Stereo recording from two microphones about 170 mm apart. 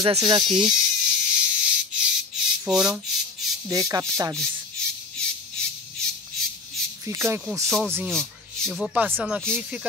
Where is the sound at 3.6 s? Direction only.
20° right (ahead or behind).